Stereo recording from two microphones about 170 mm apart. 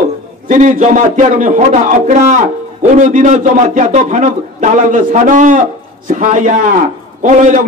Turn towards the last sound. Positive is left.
turn(degrees=-50)  # may be behind; listen again after turning